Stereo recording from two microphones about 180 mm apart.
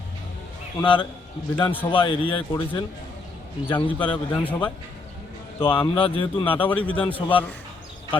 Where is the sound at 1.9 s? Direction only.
30° left (ahead or behind).